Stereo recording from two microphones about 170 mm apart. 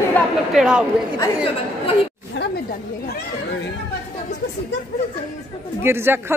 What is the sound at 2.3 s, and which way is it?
Speech, 90° left.